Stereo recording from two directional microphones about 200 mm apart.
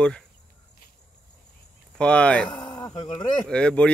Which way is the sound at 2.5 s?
20° left (ahead or behind).